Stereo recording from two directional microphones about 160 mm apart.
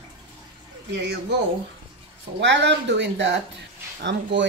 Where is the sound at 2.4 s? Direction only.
90° right.